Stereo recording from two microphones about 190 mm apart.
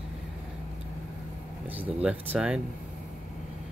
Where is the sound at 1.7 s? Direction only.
10° right (ahead or behind).